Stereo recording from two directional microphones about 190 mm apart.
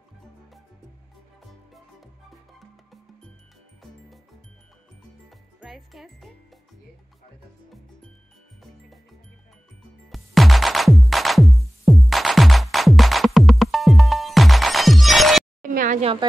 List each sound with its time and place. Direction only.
1.4 s music: centre (ahead or behind)
5.6 s speech: centre (ahead or behind)
10.0 s music: centre (ahead or behind)
15.6 s a sound: 45° right (ahead or behind)